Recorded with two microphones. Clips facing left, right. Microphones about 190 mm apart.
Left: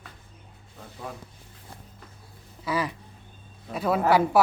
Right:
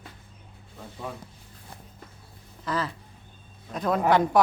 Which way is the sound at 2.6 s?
10° left (ahead or behind).